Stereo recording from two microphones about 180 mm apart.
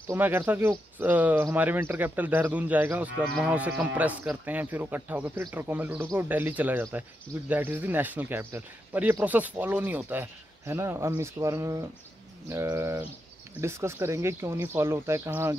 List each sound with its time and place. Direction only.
0.1 s speech: 15° right (ahead or behind)